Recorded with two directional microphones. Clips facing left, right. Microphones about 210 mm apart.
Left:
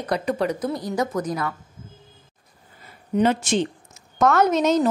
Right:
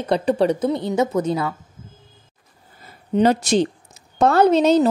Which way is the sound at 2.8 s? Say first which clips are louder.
Right 3 dB; 40° right (ahead or behind).